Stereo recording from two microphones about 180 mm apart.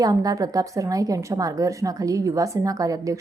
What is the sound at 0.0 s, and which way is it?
A woman's voice, 20° right (ahead or behind).